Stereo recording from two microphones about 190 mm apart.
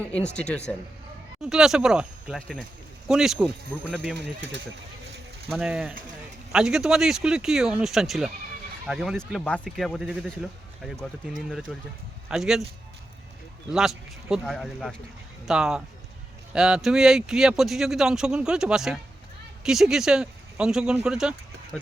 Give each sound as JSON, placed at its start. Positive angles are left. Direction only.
{"t": 0.0, "sound": "speech", "side_deg": 5}
{"t": 4.2, "sound": "speech", "side_deg": -65}
{"t": 5.5, "sound": "speech", "side_deg": -5}
{"t": 13.7, "sound": "speech", "side_deg": -5}